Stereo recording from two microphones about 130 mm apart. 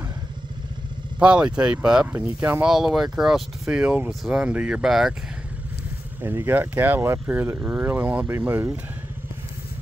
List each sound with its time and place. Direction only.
1.2 s speech: 10° right (ahead or behind)
2.1 s speech: 20° right (ahead or behind)
2.6 s speech: 5° right (ahead or behind)
6.2 s speech: 15° right (ahead or behind)